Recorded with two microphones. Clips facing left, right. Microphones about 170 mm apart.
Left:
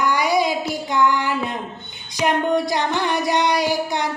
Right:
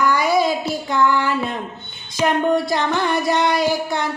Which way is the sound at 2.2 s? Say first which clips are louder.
Right 1 dB; 20° left (ahead or behind).